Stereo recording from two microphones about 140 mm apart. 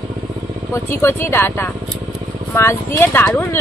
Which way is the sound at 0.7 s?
15° left (ahead or behind).